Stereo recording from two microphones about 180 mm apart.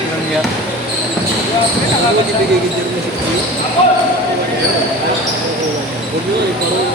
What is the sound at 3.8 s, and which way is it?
Speech, 30° left (ahead or behind).